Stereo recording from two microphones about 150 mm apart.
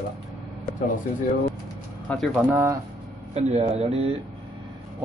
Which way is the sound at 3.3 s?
45° right (ahead or behind).